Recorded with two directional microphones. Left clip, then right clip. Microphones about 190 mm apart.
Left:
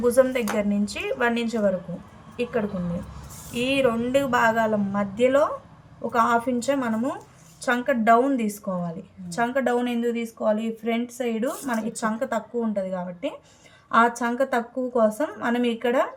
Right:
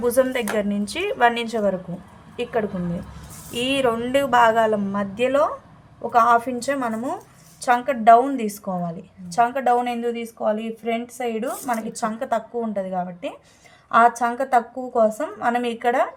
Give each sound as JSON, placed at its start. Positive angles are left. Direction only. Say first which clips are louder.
{"t": 0.0, "sound": "speech", "louder": "even", "side_deg": -40}
{"t": 3.5, "sound": "a woman's voice", "louder": "right 1 dB", "side_deg": -45}